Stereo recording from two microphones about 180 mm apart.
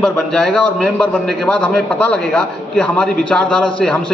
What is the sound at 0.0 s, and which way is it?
A woman's voice, 5° left (ahead or behind).